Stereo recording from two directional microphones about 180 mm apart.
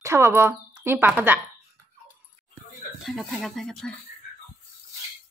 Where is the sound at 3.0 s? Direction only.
Centre (ahead or behind).